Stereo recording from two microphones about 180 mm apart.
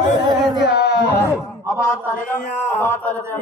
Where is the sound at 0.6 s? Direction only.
70° left (ahead or behind).